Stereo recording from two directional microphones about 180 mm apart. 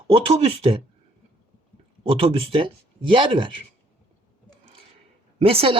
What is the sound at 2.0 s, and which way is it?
Speech, 30° right (ahead or behind).